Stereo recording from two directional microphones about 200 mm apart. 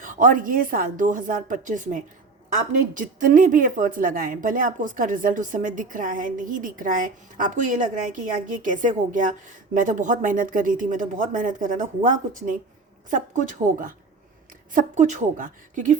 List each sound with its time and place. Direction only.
0.0 s a woman's voice: 40° right (ahead or behind)